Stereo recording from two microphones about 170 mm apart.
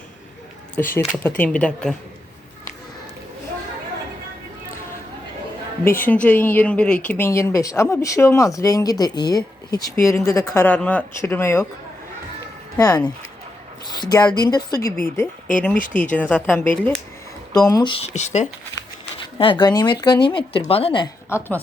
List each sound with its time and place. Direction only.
0.8 s speech: 15° left (ahead or behind)
5.8 s speech: 15° left (ahead or behind)
12.7 s speech: 20° left (ahead or behind)
14.7 s speech: 60° left (ahead or behind)
16.3 s speech: 10° left (ahead or behind)
17.7 s speech: 25° left (ahead or behind); by 18.4 s 45° left (ahead or behind)
19.4 s speech: 30° left (ahead or behind)
21.2 s a woman's voice: 15° left (ahead or behind)